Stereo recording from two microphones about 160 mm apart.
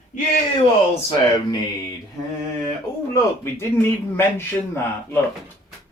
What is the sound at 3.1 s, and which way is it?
A man's voice, 15° left (ahead or behind).